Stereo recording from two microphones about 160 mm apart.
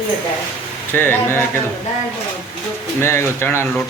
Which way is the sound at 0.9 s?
10° left (ahead or behind).